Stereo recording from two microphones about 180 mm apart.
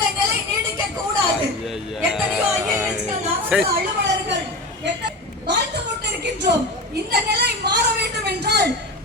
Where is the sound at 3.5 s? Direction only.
5° right (ahead or behind).